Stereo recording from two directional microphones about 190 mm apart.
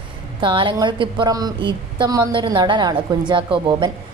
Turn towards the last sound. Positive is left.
turn(degrees=-25)  # may be behind; listen again after turning